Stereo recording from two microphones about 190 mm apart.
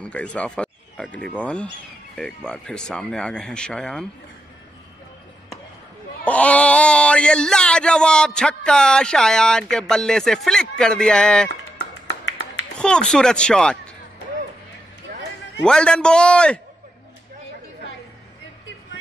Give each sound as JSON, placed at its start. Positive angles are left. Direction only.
{"t": 0.0, "sound": "speech", "side_deg": 5}
{"t": 6.2, "sound": "speech", "side_deg": 5}
{"t": 12.1, "sound": "tap", "side_deg": 70}
{"t": 12.7, "sound": "speech", "side_deg": 5}
{"t": 15.6, "sound": "speech", "side_deg": 5}